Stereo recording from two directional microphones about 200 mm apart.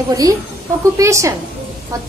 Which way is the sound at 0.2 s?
15° right (ahead or behind).